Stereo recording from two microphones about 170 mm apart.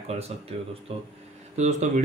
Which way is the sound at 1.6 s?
40° right (ahead or behind).